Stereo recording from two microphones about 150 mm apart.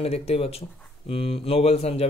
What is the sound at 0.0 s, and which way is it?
Speech, 40° left (ahead or behind).